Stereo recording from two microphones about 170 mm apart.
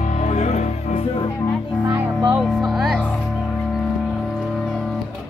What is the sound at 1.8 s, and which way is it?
Music, 15° right (ahead or behind).